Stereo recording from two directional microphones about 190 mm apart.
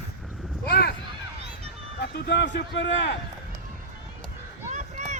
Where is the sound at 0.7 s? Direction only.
55° left (ahead or behind).